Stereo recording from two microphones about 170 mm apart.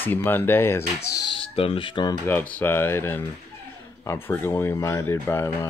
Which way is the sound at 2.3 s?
10° left (ahead or behind).